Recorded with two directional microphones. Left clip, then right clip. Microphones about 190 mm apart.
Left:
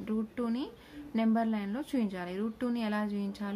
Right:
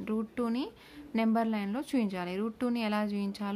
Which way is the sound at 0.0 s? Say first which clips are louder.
Right 2 dB; 55° right (ahead or behind).